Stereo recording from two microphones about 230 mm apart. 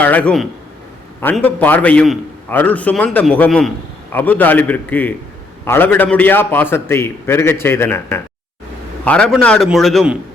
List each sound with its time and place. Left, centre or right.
0.0 s a man's voice: centre